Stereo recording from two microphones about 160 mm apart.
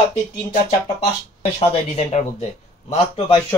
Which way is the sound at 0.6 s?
40° left (ahead or behind).